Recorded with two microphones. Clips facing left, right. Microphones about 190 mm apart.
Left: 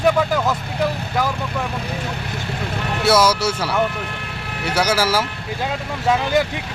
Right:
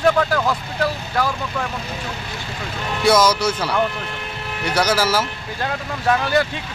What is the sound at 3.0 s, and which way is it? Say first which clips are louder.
Speech: right 1 dB; 10° left (ahead or behind).